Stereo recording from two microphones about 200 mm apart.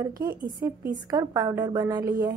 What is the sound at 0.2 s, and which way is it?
Speech, 45° right (ahead or behind).